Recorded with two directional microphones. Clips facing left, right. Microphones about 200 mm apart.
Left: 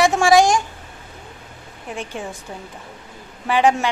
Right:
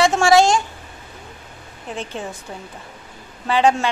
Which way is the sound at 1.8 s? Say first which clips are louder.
Right 1 dB; 15° left (ahead or behind).